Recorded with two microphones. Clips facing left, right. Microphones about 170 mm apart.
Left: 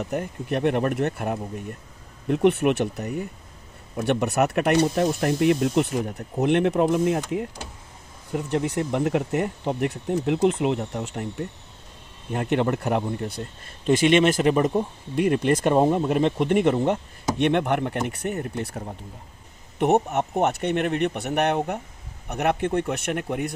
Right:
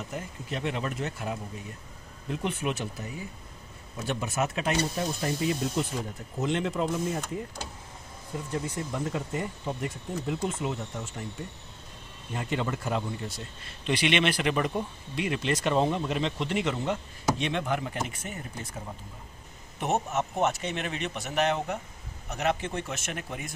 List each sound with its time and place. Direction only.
0.0 s speech: 65° left (ahead or behind)